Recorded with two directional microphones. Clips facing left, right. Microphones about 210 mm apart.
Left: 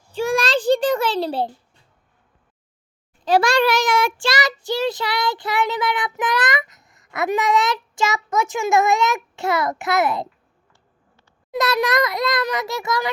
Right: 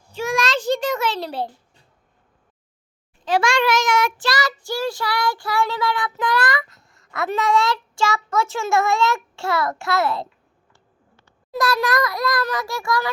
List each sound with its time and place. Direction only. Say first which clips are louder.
0.1 s a child's voice: left 3 dB; 30° left (ahead or behind)
3.2 s child singing: left 2 dB; 35° left (ahead or behind); by 10.2 s 20° left (ahead or behind)
11.5 s child singing: left 1 dB; 20° left (ahead or behind)